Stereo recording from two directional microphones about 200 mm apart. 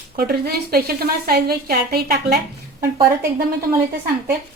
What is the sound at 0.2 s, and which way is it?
A woman's voice, 50° right (ahead or behind).